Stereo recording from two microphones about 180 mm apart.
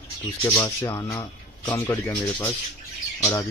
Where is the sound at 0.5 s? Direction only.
15° left (ahead or behind).